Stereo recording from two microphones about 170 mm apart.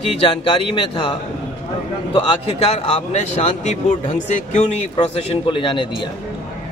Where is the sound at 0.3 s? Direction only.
30° left (ahead or behind).